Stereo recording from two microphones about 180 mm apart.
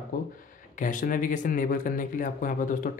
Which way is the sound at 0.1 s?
50° left (ahead or behind).